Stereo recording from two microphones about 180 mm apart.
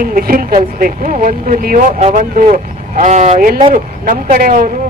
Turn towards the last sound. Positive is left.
turn(degrees=-55)  # may be behind; listen again after turning